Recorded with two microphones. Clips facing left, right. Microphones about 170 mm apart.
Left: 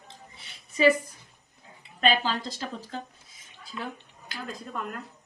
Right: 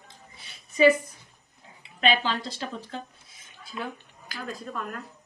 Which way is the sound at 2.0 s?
40° left (ahead or behind).